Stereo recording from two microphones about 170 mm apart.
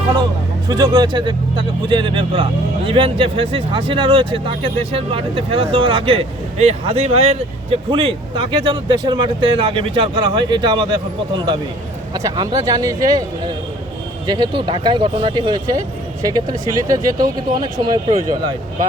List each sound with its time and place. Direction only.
0.7 s speech: 25° right (ahead or behind)
12.1 s speech: 25° right (ahead or behind)
14.3 s speech: 25° right (ahead or behind)